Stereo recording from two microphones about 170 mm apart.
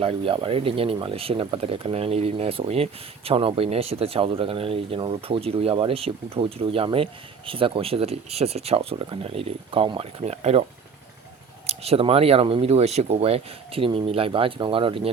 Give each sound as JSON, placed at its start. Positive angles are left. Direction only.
{"t": 0.0, "sound": "speech", "side_deg": -30}